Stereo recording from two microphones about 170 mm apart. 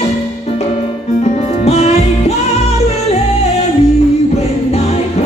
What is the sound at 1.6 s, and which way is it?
Music, 40° left (ahead or behind).